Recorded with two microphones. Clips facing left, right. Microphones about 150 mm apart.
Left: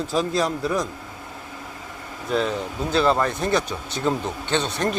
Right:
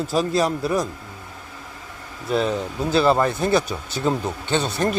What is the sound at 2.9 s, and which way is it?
Speech, 5° right (ahead or behind).